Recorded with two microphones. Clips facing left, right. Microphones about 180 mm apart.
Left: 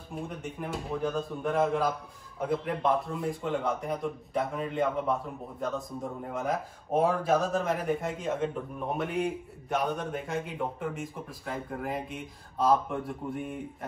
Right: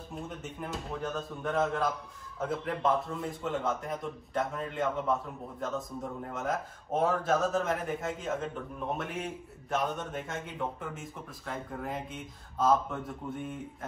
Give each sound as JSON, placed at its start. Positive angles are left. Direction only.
{"t": 0.1, "sound": "speech", "side_deg": 0}